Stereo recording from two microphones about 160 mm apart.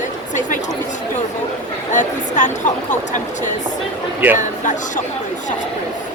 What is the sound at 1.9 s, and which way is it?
Speech, 50° left (ahead or behind).